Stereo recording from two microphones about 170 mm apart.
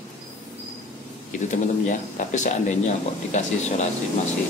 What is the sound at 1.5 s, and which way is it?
A man's voice, 45° left (ahead or behind).